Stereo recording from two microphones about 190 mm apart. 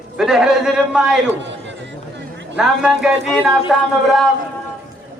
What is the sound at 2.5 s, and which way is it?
A man's voice, 5° right (ahead or behind).